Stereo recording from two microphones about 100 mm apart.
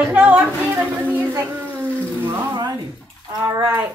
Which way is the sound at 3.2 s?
50° right (ahead or behind).